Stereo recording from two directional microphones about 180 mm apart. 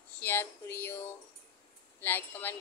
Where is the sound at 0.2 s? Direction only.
10° left (ahead or behind).